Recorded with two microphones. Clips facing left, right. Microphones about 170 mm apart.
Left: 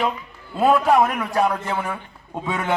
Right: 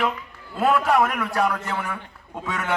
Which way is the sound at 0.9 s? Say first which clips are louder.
Left 3 dB; 25° left (ahead or behind).